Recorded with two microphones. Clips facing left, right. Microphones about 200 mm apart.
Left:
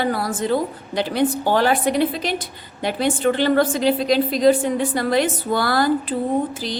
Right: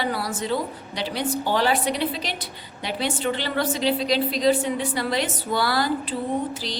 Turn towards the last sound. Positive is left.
turn(degrees=50)  # may be behind; listen again after turning